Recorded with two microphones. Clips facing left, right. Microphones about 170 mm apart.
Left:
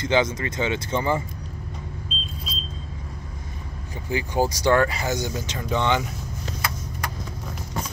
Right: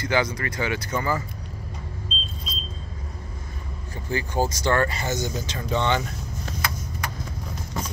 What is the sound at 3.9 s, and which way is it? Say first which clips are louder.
Speech: left 1 dB; 15° left (ahead or behind).